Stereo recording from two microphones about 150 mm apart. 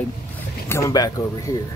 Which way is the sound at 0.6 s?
20° left (ahead or behind).